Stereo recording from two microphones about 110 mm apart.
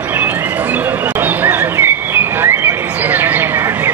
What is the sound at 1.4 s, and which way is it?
Bird, 20° right (ahead or behind).